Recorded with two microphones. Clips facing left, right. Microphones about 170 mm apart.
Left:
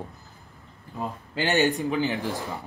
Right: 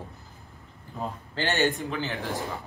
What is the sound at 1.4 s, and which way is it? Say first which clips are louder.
Speech: left 3 dB; 15° left (ahead or behind).